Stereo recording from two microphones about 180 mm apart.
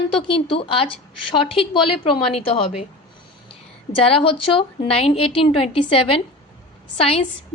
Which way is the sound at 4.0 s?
30° left (ahead or behind).